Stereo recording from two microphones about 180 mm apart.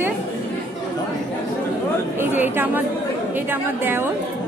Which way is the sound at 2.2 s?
10° right (ahead or behind).